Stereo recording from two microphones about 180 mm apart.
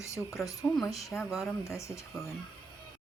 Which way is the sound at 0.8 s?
Centre (ahead or behind).